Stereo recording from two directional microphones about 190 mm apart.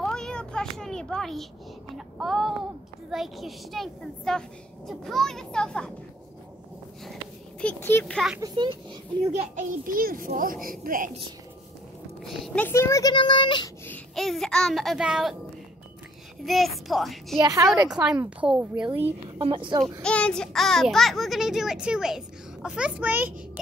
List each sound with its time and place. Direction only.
0.0 s a sound: 5° left (ahead or behind)
2.0 s child singing: centre (ahead or behind)
3.1 s a child's voice: centre (ahead or behind)
7.6 s a child's voice: 10° left (ahead or behind)
8.4 s speech: 25° right (ahead or behind)
9.6 s a child's voice: 45° right (ahead or behind)
12.2 s speech: centre (ahead or behind); by 13.7 s 25° left (ahead or behind)
13.8 s a child's voice: 5° left (ahead or behind)
16.4 s a child's voice: centre (ahead or behind)
17.4 s speech: 20° right (ahead or behind)
18.1 s a woman's voice: 10° right (ahead or behind)
19.4 s speech: 25° right (ahead or behind)
19.8 s a child's voice: 5° left (ahead or behind)